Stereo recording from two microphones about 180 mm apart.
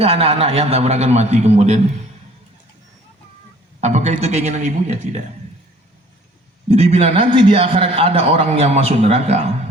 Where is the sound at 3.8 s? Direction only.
40° right (ahead or behind).